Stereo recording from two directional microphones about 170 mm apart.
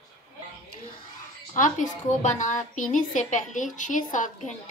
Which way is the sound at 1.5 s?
50° left (ahead or behind).